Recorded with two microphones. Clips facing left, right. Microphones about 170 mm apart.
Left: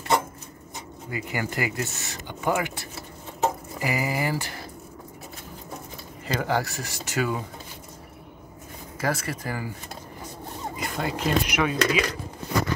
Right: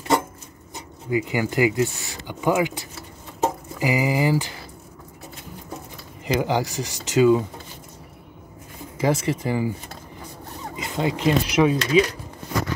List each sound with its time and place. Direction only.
1.1 s speech: 15° right (ahead or behind)
6.2 s speech: 15° right (ahead or behind)
9.0 s speech: 20° right (ahead or behind)
10.8 s speech: 20° right (ahead or behind)